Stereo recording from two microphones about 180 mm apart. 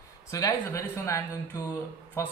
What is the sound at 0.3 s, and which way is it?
Speech, 15° left (ahead or behind).